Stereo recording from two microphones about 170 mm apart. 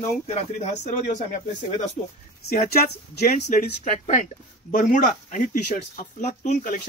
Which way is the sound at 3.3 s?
45° left (ahead or behind).